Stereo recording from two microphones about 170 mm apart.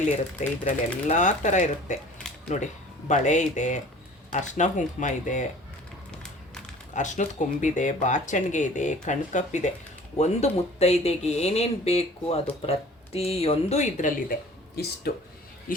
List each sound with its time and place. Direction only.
0.0 s speech: 45° left (ahead or behind)
3.1 s speech: 45° left (ahead or behind)
6.9 s speech: 45° left (ahead or behind)
14.8 s speech: 70° left (ahead or behind)